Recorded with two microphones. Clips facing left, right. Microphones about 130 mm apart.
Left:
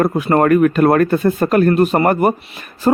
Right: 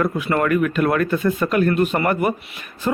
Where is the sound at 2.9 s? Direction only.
45° left (ahead or behind).